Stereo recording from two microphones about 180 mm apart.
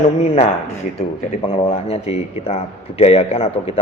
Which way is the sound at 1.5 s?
35° left (ahead or behind).